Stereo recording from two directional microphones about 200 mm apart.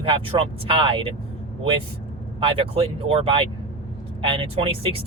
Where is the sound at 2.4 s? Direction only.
25° right (ahead or behind).